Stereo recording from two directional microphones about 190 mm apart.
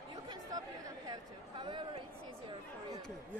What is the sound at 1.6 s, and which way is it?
Speech, 25° right (ahead or behind).